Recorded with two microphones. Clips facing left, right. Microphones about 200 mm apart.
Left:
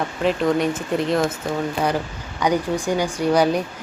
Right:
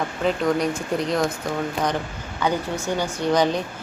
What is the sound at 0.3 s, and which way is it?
Speech, centre (ahead or behind).